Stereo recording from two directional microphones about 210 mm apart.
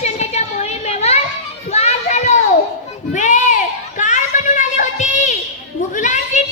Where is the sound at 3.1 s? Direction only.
35° left (ahead or behind).